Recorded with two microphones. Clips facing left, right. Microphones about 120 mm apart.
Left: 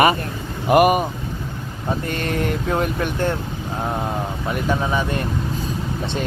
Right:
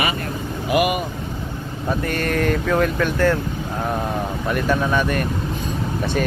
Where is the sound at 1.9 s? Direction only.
20° left (ahead or behind).